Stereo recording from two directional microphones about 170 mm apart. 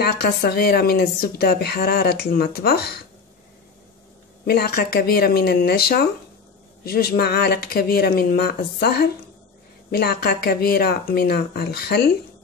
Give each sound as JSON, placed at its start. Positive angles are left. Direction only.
{"t": 0.0, "sound": "a woman's voice", "side_deg": 65}
{"t": 4.5, "sound": "a woman's voice", "side_deg": 65}